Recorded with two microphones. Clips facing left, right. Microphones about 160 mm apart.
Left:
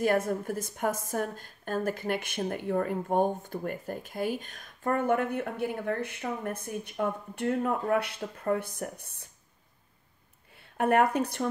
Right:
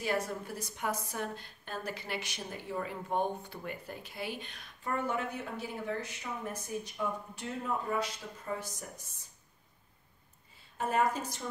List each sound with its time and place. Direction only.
0.0 s a woman's voice: 50° left (ahead or behind)
10.5 s a woman's voice: 65° left (ahead or behind)